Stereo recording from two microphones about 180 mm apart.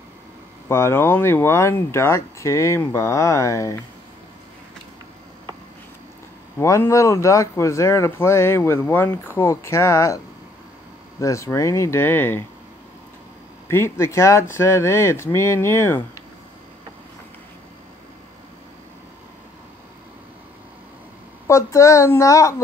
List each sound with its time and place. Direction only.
0.7 s speech: 15° left (ahead or behind)
6.6 s speech: 15° left (ahead or behind)
13.7 s speech: 15° left (ahead or behind)
21.5 s speech: 15° left (ahead or behind)